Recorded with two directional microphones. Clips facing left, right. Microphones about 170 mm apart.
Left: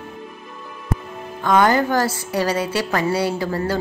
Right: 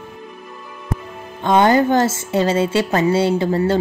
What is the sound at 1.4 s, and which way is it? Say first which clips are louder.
A woman's voice: right 3 dB; 25° right (ahead or behind).